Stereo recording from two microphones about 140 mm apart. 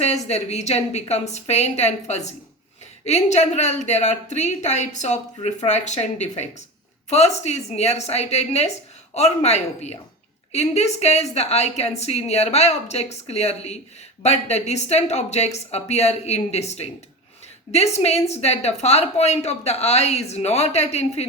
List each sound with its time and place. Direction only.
0.0 s a woman's voice: 50° left (ahead or behind)